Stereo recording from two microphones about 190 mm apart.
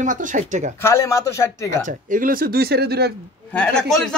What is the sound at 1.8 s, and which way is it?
Speech, 45° right (ahead or behind).